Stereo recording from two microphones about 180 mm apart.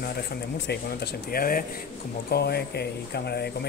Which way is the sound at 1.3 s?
50° left (ahead or behind).